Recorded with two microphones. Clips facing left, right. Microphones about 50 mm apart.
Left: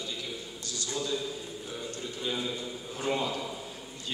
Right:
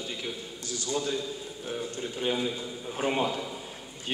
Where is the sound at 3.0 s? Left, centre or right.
Right.